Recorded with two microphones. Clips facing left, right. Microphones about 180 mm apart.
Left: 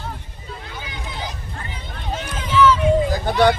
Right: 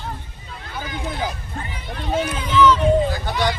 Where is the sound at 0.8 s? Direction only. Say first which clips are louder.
Right 8 dB; 50° right (ahead or behind).